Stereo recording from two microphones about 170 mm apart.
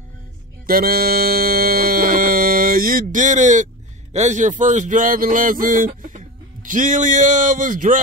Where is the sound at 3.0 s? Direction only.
45° right (ahead or behind).